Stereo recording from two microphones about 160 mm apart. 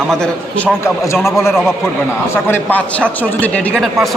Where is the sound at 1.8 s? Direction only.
15° left (ahead or behind).